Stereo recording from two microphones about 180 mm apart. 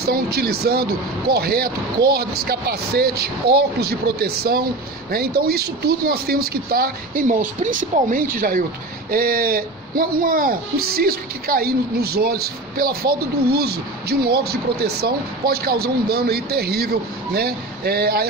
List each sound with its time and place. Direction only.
0.0 s speech: 60° right (ahead or behind)